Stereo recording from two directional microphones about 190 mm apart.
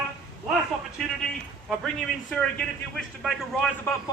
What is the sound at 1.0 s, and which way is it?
A man's voice, centre (ahead or behind).